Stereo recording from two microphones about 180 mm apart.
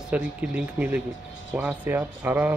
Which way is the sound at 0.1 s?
5° right (ahead or behind).